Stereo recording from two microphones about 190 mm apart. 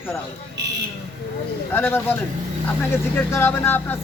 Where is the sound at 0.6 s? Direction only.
65° right (ahead or behind).